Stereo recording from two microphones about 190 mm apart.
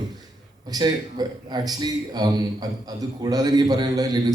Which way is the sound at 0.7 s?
20° right (ahead or behind).